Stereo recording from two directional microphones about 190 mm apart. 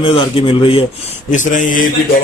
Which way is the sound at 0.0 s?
30° left (ahead or behind).